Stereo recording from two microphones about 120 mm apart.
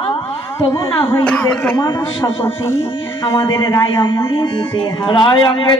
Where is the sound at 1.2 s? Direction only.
10° left (ahead or behind).